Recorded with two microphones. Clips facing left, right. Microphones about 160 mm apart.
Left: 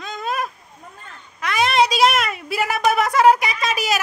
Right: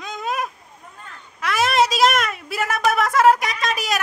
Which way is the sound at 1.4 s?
Centre (ahead or behind).